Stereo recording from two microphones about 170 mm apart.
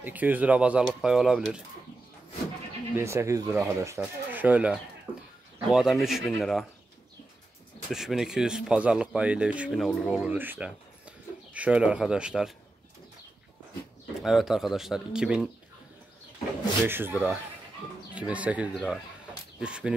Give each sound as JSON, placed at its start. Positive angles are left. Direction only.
{"t": 0.0, "sound": "speech", "side_deg": -10}
{"t": 3.0, "sound": "speech", "side_deg": -15}
{"t": 7.9, "sound": "speech", "side_deg": 0}
{"t": 14.2, "sound": "speech", "side_deg": 0}
{"t": 16.8, "sound": "speech", "side_deg": -10}